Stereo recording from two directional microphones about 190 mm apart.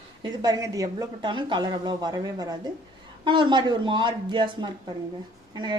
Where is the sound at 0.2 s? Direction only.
20° right (ahead or behind).